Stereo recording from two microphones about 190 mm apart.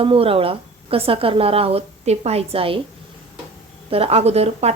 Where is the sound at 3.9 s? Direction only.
30° right (ahead or behind).